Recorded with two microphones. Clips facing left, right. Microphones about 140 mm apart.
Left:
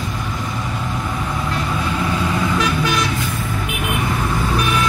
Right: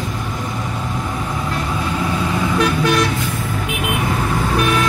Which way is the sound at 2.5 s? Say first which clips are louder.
Right 3 dB; 55° right (ahead or behind).